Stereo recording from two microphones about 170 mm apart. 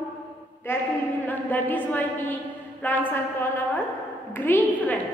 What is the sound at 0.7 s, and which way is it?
A woman's voice, 15° left (ahead or behind).